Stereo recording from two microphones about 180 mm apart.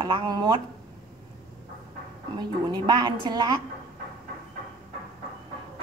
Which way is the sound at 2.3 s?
25° right (ahead or behind).